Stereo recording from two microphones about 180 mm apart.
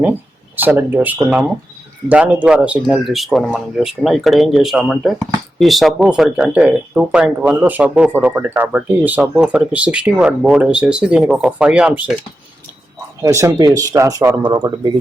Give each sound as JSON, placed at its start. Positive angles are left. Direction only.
{"t": 0.0, "sound": "speech", "side_deg": -10}
{"t": 13.2, "sound": "speech", "side_deg": -20}